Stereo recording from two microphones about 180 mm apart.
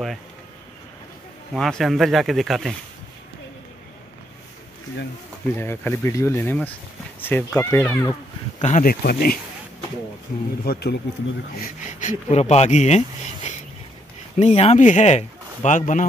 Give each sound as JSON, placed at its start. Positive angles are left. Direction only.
{"t": 1.5, "sound": "speech", "side_deg": 0}
{"t": 5.5, "sound": "speech", "side_deg": 15}
{"t": 8.5, "sound": "speech", "side_deg": 40}
{"t": 9.0, "sound": "speech", "side_deg": 55}
{"t": 10.6, "sound": "speech", "side_deg": 60}
{"t": 11.5, "sound": "speech", "side_deg": 50}